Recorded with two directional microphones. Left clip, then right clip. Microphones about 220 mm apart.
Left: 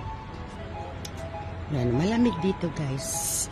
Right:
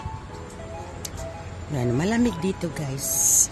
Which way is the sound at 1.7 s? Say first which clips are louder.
Right 2 dB; 15° right (ahead or behind).